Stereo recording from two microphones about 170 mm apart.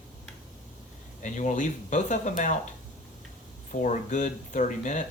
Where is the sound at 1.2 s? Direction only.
45° left (ahead or behind).